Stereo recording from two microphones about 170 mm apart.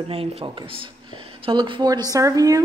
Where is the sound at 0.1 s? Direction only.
35° right (ahead or behind).